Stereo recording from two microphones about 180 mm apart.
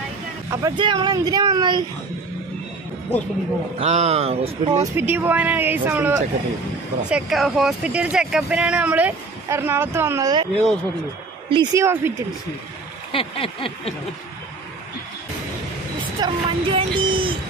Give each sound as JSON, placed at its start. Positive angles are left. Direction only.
{"t": 0.5, "sound": "speech", "side_deg": -20}
{"t": 3.8, "sound": "speech", "side_deg": -35}
{"t": 4.9, "sound": "speech", "side_deg": -10}
{"t": 10.5, "sound": "speech", "side_deg": 5}
{"t": 11.7, "sound": "speech", "side_deg": -15}
{"t": 13.1, "sound": "a sound", "side_deg": 30}
{"t": 16.2, "sound": "a sound", "side_deg": -25}